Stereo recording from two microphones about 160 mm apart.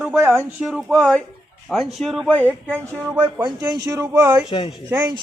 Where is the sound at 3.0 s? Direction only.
10° right (ahead or behind).